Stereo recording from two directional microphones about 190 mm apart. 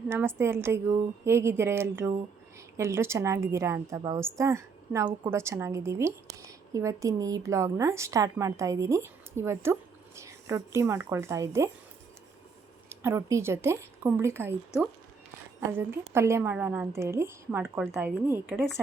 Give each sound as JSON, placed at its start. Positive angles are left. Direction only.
{"t": 0.1, "sound": "a woman's voice", "side_deg": -10}
{"t": 12.9, "sound": "speech", "side_deg": -10}
{"t": 15.8, "sound": "a woman's voice", "side_deg": -15}